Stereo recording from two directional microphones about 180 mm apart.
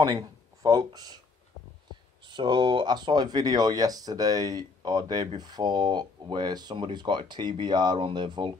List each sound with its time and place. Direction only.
0.0 s speech: 20° right (ahead or behind)
2.2 s speech: 25° right (ahead or behind)